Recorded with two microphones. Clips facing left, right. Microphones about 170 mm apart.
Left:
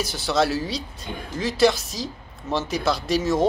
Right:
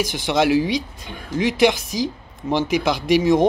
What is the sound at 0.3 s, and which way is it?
Speech, 15° right (ahead or behind).